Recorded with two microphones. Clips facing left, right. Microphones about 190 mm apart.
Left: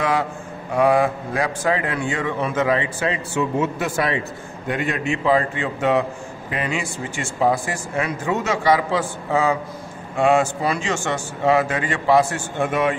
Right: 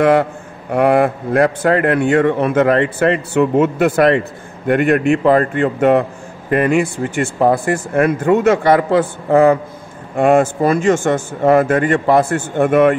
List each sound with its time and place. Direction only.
0.0 s a man's voice: 60° right (ahead or behind)